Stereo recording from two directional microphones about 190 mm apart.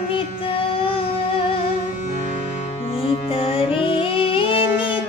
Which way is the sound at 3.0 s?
30° left (ahead or behind).